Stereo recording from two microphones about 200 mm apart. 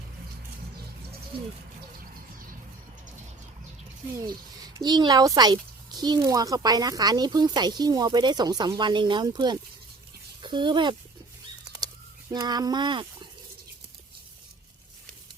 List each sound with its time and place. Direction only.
4.3 s a child's voice: 20° right (ahead or behind)
11.6 s bird: 20° right (ahead or behind)
12.3 s a child's voice: 20° right (ahead or behind)